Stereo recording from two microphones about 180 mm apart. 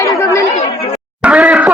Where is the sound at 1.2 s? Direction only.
5° right (ahead or behind).